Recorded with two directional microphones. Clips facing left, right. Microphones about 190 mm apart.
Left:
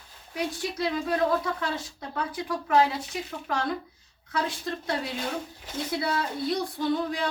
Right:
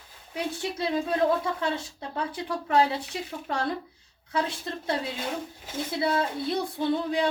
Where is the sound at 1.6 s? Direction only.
30° right (ahead or behind).